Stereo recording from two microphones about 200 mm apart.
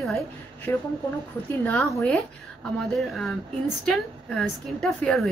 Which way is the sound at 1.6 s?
10° left (ahead or behind).